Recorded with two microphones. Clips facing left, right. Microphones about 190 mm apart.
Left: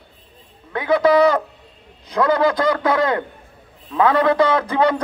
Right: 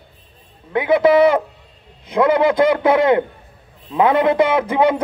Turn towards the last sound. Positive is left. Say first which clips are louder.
# right 2 dB
turn(degrees=-20)  # may be behind; listen again after turning